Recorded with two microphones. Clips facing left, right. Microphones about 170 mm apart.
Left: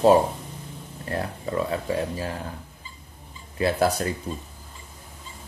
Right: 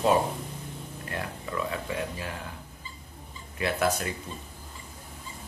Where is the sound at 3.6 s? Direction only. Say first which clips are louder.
Left 5 dB; 35° left (ahead or behind).